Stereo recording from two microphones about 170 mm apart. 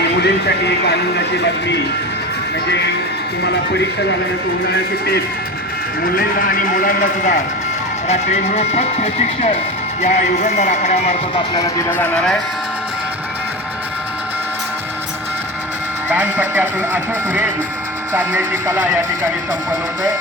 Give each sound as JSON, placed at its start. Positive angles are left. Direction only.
{"t": 0.2, "sound": "speech", "side_deg": 80}
{"t": 3.4, "sound": "speech", "side_deg": 90}
{"t": 4.6, "sound": "speech", "side_deg": 70}
{"t": 6.1, "sound": "speech", "side_deg": 60}
{"t": 8.0, "sound": "speech", "side_deg": 40}
{"t": 11.5, "sound": "speech", "side_deg": 20}
{"t": 16.0, "sound": "speech", "side_deg": -10}